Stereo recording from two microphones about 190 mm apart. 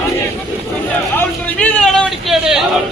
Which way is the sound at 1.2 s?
5° left (ahead or behind).